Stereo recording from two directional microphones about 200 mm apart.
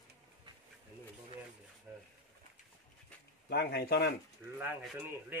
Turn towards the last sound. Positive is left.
turn(degrees=-10)  # may be behind; listen again after turning